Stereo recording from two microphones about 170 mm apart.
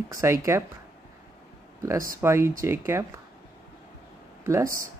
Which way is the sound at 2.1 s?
15° right (ahead or behind).